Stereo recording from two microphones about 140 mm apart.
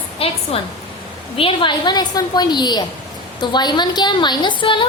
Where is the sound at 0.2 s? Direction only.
40° left (ahead or behind).